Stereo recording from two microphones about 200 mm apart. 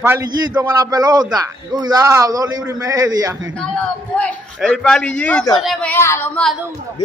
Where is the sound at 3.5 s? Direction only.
5° left (ahead or behind).